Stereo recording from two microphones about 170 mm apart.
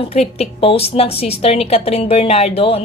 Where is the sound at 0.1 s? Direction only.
35° left (ahead or behind).